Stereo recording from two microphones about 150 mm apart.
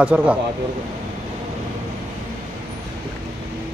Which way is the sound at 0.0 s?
10° right (ahead or behind).